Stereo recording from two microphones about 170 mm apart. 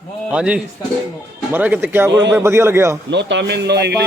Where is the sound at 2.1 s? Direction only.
90° right.